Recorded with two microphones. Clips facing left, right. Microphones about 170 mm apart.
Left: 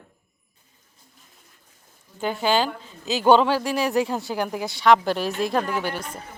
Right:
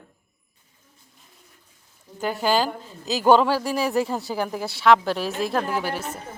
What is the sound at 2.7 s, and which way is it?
Speech, 40° right (ahead or behind).